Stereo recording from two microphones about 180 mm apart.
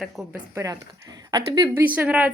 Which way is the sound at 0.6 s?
20° right (ahead or behind).